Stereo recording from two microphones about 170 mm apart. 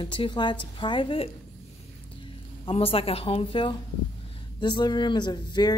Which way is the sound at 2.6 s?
35° left (ahead or behind).